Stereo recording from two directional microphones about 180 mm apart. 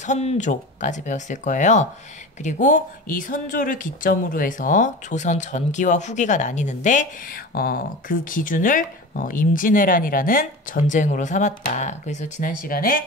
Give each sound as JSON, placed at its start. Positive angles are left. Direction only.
{"t": 0.0, "sound": "speech", "side_deg": 40}